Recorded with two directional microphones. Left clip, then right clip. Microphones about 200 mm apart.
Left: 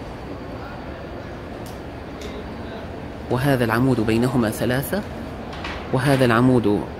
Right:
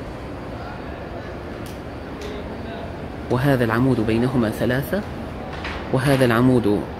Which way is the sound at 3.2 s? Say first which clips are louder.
Even; centre (ahead or behind).